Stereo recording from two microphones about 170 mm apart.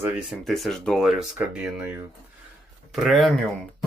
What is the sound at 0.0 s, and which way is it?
Speech, centre (ahead or behind).